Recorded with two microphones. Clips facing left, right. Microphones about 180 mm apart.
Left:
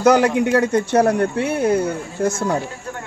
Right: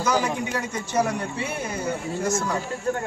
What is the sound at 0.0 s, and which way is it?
A man's voice, 70° left (ahead or behind).